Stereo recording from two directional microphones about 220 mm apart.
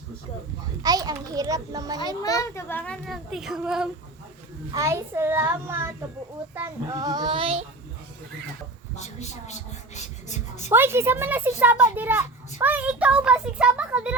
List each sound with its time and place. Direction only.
0.6 s a child's voice: 15° right (ahead or behind)
2.2 s a child's voice: 15° left (ahead or behind); by 3.8 s 5° right (ahead or behind)
4.7 s a child's voice: 15° right (ahead or behind)
9.0 s a woman's voice: 30° left (ahead or behind)
10.7 s a child's voice: 10° right (ahead or behind)